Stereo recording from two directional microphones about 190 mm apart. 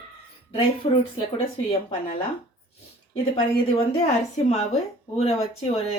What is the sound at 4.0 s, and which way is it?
Speech, 35° left (ahead or behind).